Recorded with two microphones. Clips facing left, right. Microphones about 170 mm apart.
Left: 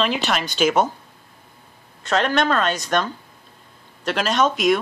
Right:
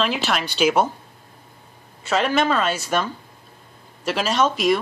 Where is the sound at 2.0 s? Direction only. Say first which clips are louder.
Even; 5° right (ahead or behind).